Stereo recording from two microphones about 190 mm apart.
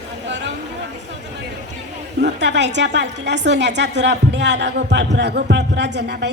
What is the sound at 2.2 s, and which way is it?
A woman's voice, 65° right (ahead or behind).